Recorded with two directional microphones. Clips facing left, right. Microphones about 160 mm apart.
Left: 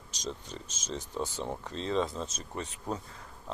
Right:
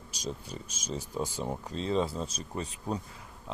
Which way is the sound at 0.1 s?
10° right (ahead or behind).